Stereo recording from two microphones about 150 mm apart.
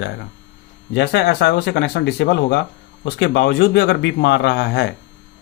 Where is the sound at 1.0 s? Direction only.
90° left.